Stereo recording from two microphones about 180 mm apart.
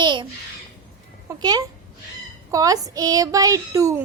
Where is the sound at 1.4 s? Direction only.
25° right (ahead or behind).